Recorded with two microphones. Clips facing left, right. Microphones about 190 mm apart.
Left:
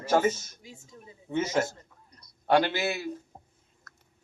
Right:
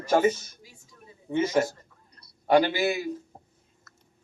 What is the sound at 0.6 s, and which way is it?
Speech, 25° left (ahead or behind).